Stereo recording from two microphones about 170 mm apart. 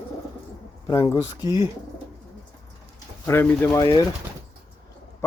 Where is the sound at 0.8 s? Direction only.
20° left (ahead or behind).